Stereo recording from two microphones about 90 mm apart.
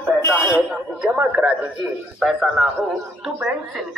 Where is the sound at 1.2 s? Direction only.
15° right (ahead or behind).